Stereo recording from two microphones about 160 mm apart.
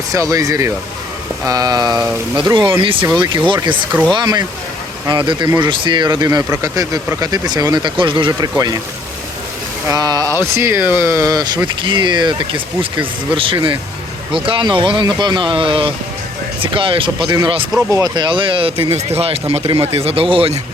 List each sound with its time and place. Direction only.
0.1 s speech: 20° right (ahead or behind)
2.0 s speech: 5° right (ahead or behind)
2.5 s speech: 30° right (ahead or behind)
9.8 s speech: 25° right (ahead or behind)